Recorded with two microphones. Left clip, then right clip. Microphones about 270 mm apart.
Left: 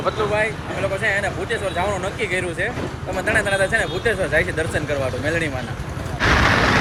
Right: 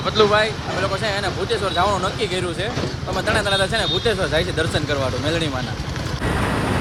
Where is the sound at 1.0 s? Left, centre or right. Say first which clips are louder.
Left 1 dB; centre.